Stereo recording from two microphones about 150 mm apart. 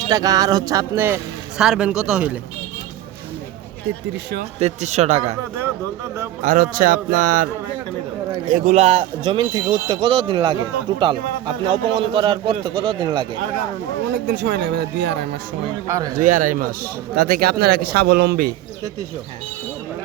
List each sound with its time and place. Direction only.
0.0 s speech: 25° right (ahead or behind)
1.5 s speech: 5° right (ahead or behind)
4.6 s a man's voice: 50° right (ahead or behind)
6.4 s speech: 60° right (ahead or behind)
8.4 s speech: 60° right (ahead or behind); by 13.2 s 30° right (ahead or behind)
14.3 s speech: 90° right
15.9 s speech: 25° right (ahead or behind)
16.1 s speech: 60° right (ahead or behind)
17.2 s speech: 90° right